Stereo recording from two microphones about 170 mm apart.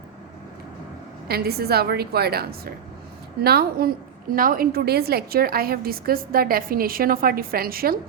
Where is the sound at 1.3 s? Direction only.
65° right (ahead or behind).